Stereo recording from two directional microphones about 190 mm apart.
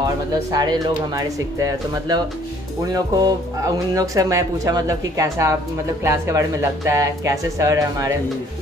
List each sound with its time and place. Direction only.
0.0 s speech: 20° right (ahead or behind)